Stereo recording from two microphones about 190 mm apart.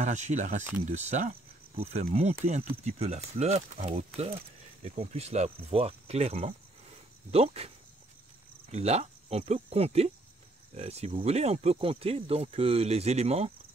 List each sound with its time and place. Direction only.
0.0 s speech: 40° right (ahead or behind)
8.7 s speech: 35° right (ahead or behind)